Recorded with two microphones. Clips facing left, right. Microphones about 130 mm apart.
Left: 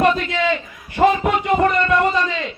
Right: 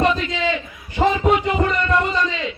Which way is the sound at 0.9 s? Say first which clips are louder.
Left 3 dB; 55° left (ahead or behind).